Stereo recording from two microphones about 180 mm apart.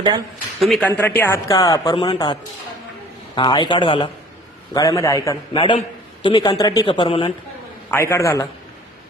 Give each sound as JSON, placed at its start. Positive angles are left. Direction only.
{"t": 0.6, "sound": "speech", "side_deg": 5}
{"t": 7.9, "sound": "a man's voice", "side_deg": 15}